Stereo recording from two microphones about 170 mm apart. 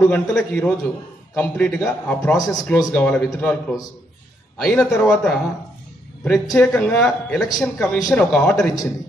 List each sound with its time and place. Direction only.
0.3 s a man's voice: 5° left (ahead or behind)
2.3 s a man's voice: 20° left (ahead or behind); by 8.7 s 5° left (ahead or behind)